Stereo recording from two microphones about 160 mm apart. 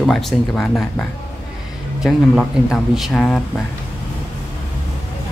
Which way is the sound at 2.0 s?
Centre (ahead or behind).